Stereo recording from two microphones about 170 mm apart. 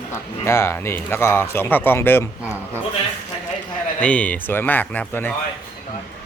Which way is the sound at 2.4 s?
10° right (ahead or behind).